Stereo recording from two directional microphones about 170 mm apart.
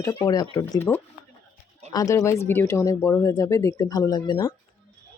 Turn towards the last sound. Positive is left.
turn(degrees=20)  # may be behind; listen again after turning